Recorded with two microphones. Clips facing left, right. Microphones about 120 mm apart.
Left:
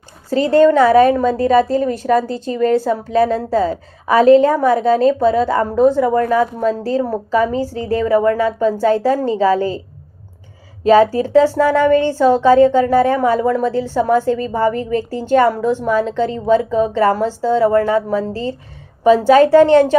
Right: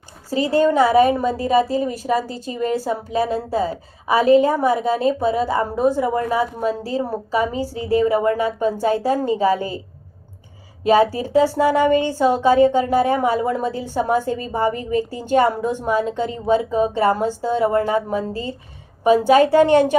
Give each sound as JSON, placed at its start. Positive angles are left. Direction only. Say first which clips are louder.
{"t": 0.3, "sound": "a woman's voice", "louder": "left 6 dB", "side_deg": -10}
{"t": 11.1, "sound": "a woman's voice", "louder": "left 5 dB", "side_deg": -15}